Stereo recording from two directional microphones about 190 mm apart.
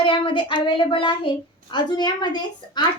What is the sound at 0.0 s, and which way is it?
A woman's voice, 25° left (ahead or behind).